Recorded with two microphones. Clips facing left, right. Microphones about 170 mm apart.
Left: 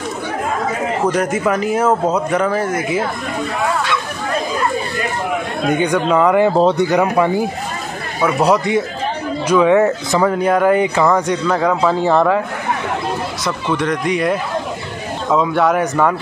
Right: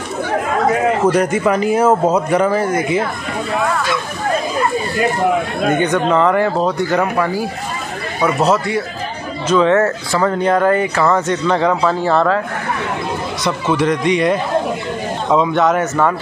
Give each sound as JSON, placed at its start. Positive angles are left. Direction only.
{"t": 1.1, "sound": "speech", "side_deg": 0}
{"t": 5.7, "sound": "speech", "side_deg": 10}
{"t": 11.2, "sound": "speech", "side_deg": 5}
{"t": 11.9, "sound": "speech", "side_deg": 15}
{"t": 13.4, "sound": "speech", "side_deg": -5}